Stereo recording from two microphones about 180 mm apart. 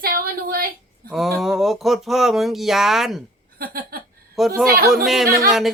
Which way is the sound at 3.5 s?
55° right (ahead or behind).